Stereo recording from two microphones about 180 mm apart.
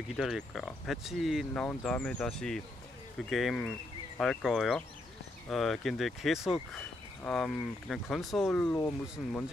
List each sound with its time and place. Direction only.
0.1 s speech: centre (ahead or behind)
9.2 s speech: centre (ahead or behind)